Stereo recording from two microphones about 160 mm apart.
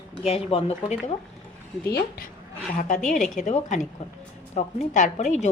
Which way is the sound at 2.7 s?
50° left (ahead or behind).